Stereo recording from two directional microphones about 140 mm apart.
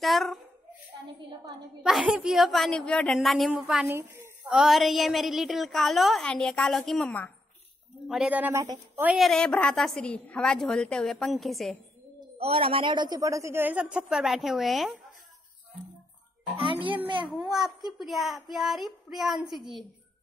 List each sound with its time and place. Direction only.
0.0 s a woman's voice: centre (ahead or behind)
1.8 s a woman's voice: centre (ahead or behind)
3.9 s a man's voice: 15° right (ahead or behind)
4.5 s a woman's voice: centre (ahead or behind)
8.1 s a man's voice: 10° right (ahead or behind)
9.0 s a woman's voice: centre (ahead or behind)
12.4 s a man's voice: 45° right (ahead or behind); by 15.0 s centre (ahead or behind)
16.8 s a child's voice: 35° right (ahead or behind)
17.4 s a woman's voice: 5° right (ahead or behind)